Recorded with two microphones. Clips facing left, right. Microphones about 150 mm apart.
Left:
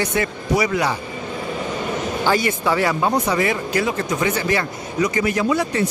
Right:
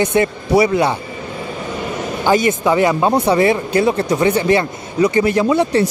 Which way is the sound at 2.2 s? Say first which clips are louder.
Right 6 dB; 20° right (ahead or behind).